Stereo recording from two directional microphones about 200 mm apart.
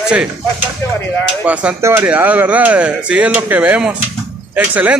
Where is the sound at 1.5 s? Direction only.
5° right (ahead or behind).